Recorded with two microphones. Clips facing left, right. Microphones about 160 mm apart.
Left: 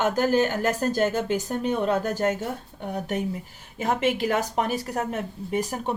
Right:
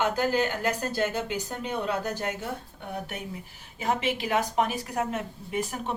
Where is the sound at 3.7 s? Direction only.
45° left (ahead or behind).